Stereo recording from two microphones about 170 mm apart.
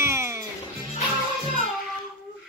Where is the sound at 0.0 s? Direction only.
15° right (ahead or behind).